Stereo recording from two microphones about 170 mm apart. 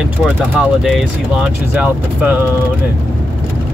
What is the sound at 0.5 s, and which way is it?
Speech, 5° right (ahead or behind).